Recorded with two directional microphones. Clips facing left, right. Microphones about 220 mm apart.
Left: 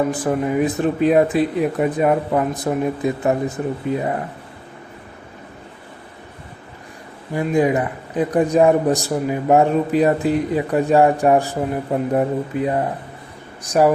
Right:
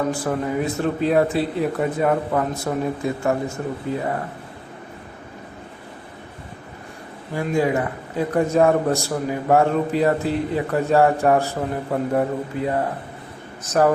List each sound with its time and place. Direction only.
0.1 s a man's voice: 20° left (ahead or behind)
7.3 s a man's voice: 15° left (ahead or behind)